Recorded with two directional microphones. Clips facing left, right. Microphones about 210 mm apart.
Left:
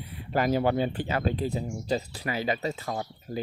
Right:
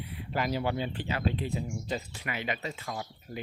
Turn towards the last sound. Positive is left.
turn(degrees=35)  # may be behind; listen again after turning